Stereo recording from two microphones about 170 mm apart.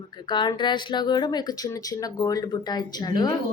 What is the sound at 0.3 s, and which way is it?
Speech, 25° left (ahead or behind).